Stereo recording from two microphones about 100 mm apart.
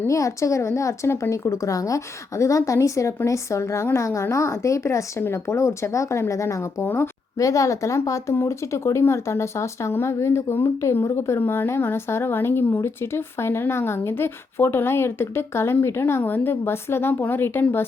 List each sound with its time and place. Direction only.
0.1 s speech: 30° left (ahead or behind)
7.3 s speech: 35° left (ahead or behind)